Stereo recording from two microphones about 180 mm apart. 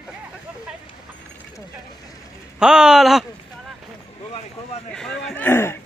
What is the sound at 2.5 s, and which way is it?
Speech, 5° right (ahead or behind).